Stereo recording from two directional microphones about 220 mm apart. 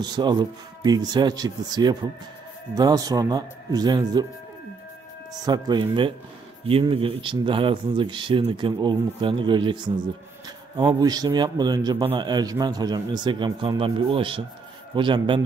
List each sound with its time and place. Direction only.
0.0 s a man's voice: 20° right (ahead or behind)
5.4 s a man's voice: 20° right (ahead or behind)